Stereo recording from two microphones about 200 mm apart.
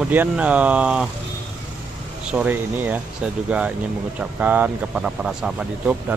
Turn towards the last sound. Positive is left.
turn(degrees=-5)  # may be behind; listen again after turning